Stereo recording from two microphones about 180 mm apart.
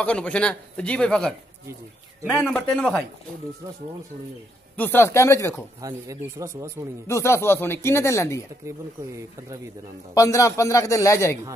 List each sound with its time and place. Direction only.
0.0 s speech: 5° left (ahead or behind)
2.4 s a man's voice: 5° left (ahead or behind)
4.7 s speech: 10° left (ahead or behind)
5.8 s speech: 20° right (ahead or behind)
7.1 s speech: 15° left (ahead or behind)
8.6 s speech: 15° right (ahead or behind)
10.1 s speech: 15° left (ahead or behind)